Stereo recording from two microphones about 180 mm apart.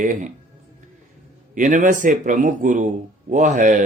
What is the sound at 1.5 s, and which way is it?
A man's voice, 45° right (ahead or behind).